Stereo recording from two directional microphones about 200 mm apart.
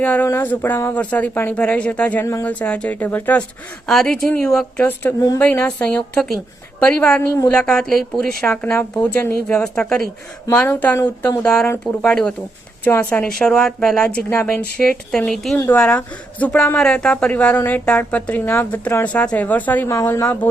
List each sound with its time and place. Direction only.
0.0 s a woman's voice: 10° left (ahead or behind)